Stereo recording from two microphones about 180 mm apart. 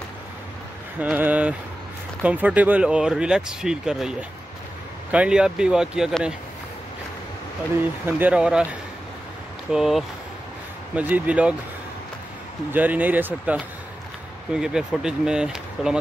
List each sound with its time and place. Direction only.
0.9 s speech: 10° right (ahead or behind)
8.0 s speech: 10° right (ahead or behind)
9.7 s speech: centre (ahead or behind)
12.7 s speech: 10° right (ahead or behind)